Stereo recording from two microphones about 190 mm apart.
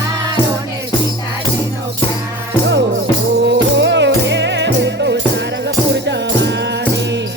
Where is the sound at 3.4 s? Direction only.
65° right (ahead or behind).